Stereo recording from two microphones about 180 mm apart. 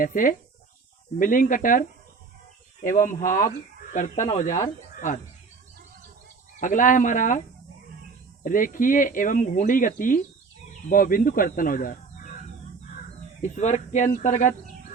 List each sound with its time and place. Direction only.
0.0 s speech: 50° left (ahead or behind)
2.9 s speech: 45° left (ahead or behind)
6.6 s speech: 45° left (ahead or behind)
8.4 s speech: 50° left (ahead or behind)
13.4 s speech: 40° left (ahead or behind)